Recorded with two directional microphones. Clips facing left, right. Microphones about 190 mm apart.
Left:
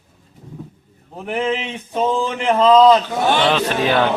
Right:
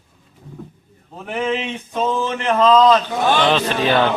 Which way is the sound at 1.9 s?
10° left (ahead or behind).